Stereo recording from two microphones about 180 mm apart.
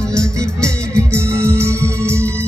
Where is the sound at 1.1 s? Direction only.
15° right (ahead or behind).